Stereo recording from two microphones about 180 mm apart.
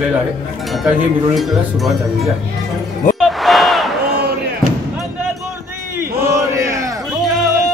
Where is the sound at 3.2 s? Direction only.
Centre (ahead or behind).